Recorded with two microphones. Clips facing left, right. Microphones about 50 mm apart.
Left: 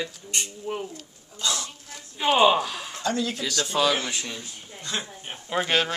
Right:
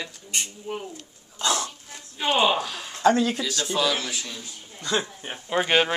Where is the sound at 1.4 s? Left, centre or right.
Right.